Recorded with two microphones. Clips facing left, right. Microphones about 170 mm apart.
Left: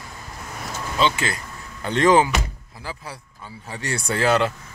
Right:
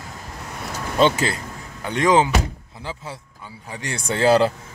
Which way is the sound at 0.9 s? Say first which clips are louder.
Right 4 dB; 50° right (ahead or behind).